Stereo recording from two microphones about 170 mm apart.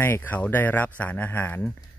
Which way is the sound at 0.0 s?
10° left (ahead or behind).